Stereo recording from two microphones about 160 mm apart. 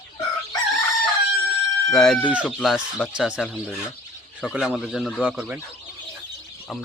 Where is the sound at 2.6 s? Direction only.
5° left (ahead or behind).